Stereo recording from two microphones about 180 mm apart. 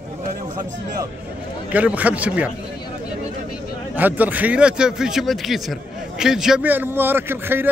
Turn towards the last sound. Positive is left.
turn(degrees=-10)  # may be behind; listen again after turning